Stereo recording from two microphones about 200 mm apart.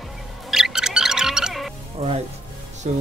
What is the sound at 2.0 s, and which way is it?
Speech, 30° right (ahead or behind).